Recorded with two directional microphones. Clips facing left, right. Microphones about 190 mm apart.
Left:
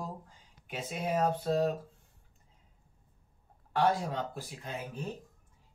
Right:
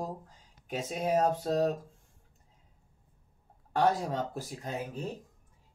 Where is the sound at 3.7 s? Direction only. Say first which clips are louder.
Right 1 dB; 45° right (ahead or behind).